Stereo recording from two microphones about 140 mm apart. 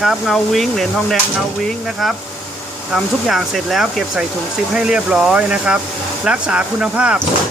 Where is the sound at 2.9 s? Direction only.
Centre (ahead or behind).